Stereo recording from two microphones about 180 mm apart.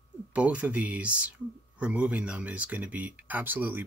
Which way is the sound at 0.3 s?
5° right (ahead or behind).